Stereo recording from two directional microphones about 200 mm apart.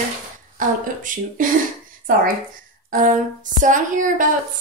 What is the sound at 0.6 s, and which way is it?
Speech, 40° right (ahead or behind).